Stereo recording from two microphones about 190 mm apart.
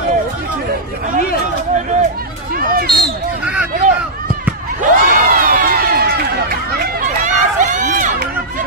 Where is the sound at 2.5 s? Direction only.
50° right (ahead or behind).